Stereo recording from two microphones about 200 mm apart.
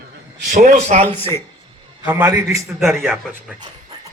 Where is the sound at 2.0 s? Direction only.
15° right (ahead or behind).